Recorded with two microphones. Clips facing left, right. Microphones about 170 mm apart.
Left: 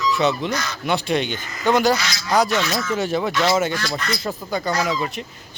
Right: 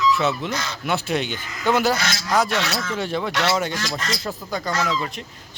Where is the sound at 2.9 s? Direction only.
5° left (ahead or behind).